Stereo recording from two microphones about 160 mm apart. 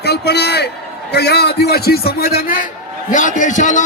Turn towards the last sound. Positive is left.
turn(degrees=50)  # may be behind; listen again after turning